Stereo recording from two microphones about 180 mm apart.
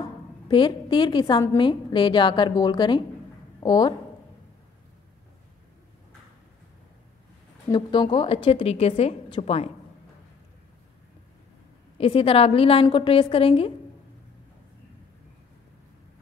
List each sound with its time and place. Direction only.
0.5 s a woman's voice: 25° left (ahead or behind)
7.7 s a woman's voice: 25° left (ahead or behind)
12.0 s a woman's voice: 30° left (ahead or behind)